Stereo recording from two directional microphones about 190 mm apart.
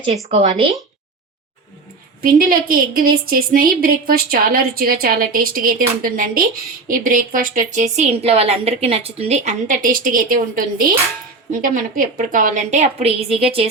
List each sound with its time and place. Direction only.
0.1 s speech: 35° right (ahead or behind)
2.2 s a woman's voice: 50° right (ahead or behind); by 13.7 s 30° right (ahead or behind)